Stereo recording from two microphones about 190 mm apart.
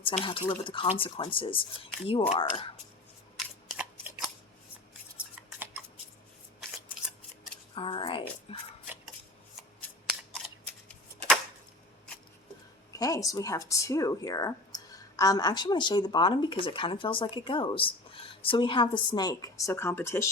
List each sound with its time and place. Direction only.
0.0 s speech: 30° left (ahead or behind)
3.3 s scissors: centre (ahead or behind)
7.8 s speech: 25° left (ahead or behind)
8.5 s a sound: 30° left (ahead or behind)
10.3 s a sound: centre (ahead or behind)
13.0 s a woman's voice: 20° left (ahead or behind)